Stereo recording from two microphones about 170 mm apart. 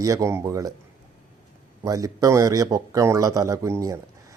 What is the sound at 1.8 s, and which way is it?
Speech, 20° right (ahead or behind).